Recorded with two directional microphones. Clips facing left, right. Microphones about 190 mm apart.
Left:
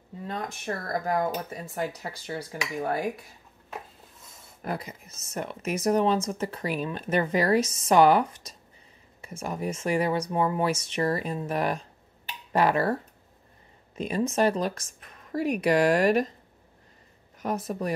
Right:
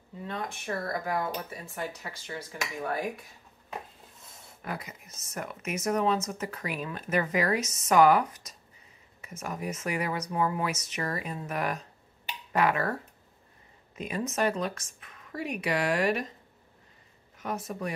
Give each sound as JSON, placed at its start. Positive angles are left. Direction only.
{"t": 0.3, "sound": "speech", "side_deg": 40}
{"t": 4.6, "sound": "speech", "side_deg": 35}
{"t": 13.9, "sound": "speech", "side_deg": 30}
{"t": 17.4, "sound": "speech", "side_deg": 35}